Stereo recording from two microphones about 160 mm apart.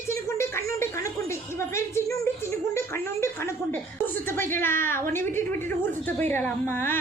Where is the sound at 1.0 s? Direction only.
15° left (ahead or behind).